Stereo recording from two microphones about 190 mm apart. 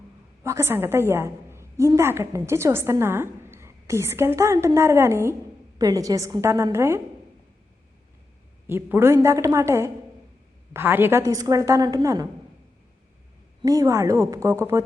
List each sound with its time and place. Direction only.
0.4 s a woman's voice: 15° right (ahead or behind)
8.6 s a woman's voice: 10° right (ahead or behind)
13.6 s a woman's voice: 20° right (ahead or behind)